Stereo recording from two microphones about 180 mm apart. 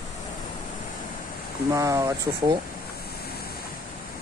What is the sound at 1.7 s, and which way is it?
Speech, 15° right (ahead or behind).